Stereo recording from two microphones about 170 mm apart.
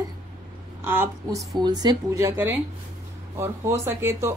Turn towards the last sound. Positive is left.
turn(degrees=-15)  # may be behind; listen again after turning